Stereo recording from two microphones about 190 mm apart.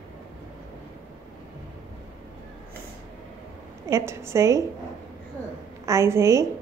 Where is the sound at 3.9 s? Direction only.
15° right (ahead or behind).